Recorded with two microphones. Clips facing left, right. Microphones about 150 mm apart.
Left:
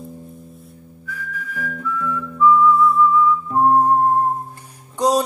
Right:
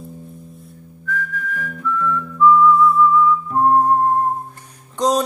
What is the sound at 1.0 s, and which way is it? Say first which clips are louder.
Whistling: right 6 dB; 10° left (ahead or behind).